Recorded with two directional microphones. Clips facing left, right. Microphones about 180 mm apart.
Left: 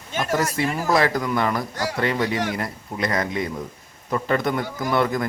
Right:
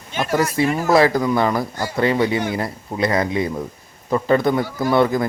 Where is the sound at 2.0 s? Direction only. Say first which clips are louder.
Right 6 dB; 30° right (ahead or behind).